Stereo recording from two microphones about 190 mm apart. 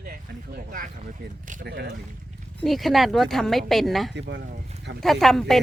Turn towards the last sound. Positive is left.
turn(degrees=0)  # may be behind; listen again after turning